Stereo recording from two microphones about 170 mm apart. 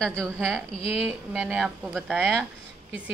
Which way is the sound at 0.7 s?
35° left (ahead or behind).